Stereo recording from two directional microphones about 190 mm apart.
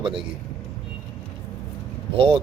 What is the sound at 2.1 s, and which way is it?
Speech, 30° right (ahead or behind).